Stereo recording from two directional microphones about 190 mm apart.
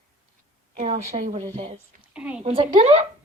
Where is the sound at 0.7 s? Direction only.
40° right (ahead or behind).